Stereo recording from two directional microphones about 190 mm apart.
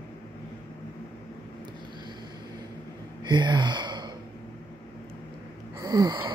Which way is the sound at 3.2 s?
25° right (ahead or behind).